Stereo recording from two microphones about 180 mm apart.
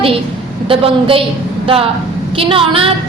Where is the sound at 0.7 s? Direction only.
30° right (ahead or behind).